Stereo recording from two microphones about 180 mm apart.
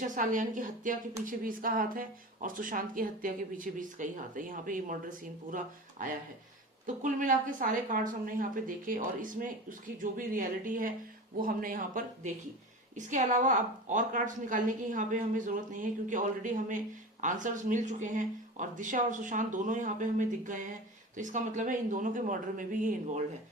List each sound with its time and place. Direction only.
0.0 s a woman's voice: 45° right (ahead or behind)